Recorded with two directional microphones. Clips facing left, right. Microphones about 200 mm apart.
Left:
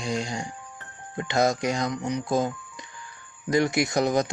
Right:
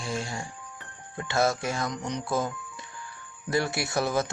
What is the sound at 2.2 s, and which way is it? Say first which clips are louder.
Speech: left 4 dB; 20° left (ahead or behind).